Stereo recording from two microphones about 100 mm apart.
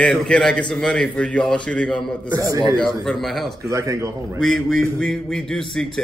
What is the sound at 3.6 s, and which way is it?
Speech, 30° right (ahead or behind).